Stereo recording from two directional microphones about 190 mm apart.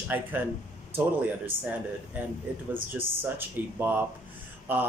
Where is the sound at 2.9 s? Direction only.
10° right (ahead or behind).